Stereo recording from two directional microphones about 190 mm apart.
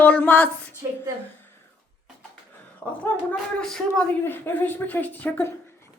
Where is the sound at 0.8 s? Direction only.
20° right (ahead or behind).